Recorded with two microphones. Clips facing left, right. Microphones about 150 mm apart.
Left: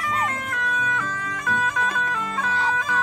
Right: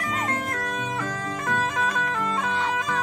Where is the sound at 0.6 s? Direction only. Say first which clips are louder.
Left 2 dB; 35° right (ahead or behind).